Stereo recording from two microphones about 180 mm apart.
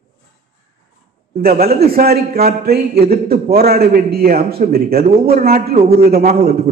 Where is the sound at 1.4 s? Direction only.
55° right (ahead or behind).